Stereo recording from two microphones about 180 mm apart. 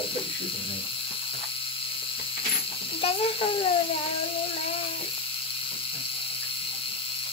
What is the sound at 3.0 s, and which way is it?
Speech, 30° left (ahead or behind).